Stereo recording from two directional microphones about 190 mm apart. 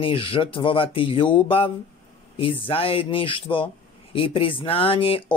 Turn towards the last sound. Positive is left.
turn(degrees=30)  # may be behind; listen again after turning